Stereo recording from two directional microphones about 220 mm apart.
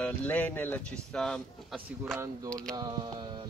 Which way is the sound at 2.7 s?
20° right (ahead or behind).